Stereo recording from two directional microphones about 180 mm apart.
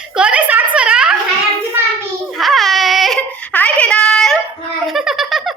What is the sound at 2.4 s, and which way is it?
Baby cry, centre (ahead or behind).